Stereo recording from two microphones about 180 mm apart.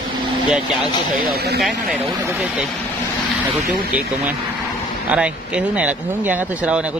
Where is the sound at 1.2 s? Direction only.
60° right (ahead or behind).